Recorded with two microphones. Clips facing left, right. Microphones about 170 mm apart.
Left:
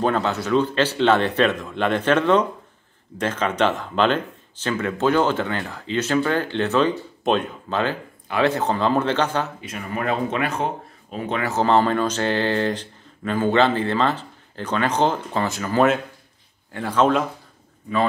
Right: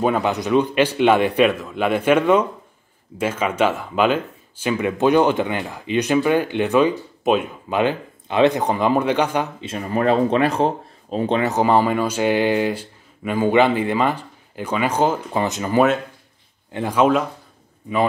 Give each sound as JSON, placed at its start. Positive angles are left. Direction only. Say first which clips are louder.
{"t": 0.0, "sound": "speech", "louder": "right 2 dB", "side_deg": -15}
{"t": 9.6, "sound": "speech", "louder": "right 6 dB", "side_deg": -30}
{"t": 11.4, "sound": "speech", "louder": "left 1 dB", "side_deg": -15}
{"t": 15.4, "sound": "speech", "louder": "right 1 dB", "side_deg": -20}